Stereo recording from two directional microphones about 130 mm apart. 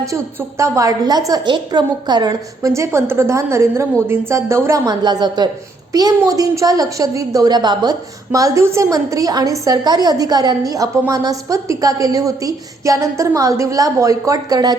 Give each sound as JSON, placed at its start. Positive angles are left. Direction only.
{"t": 0.0, "sound": "a woman's voice", "side_deg": -25}